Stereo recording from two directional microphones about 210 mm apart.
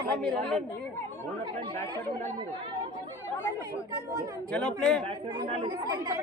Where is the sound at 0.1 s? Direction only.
5° left (ahead or behind).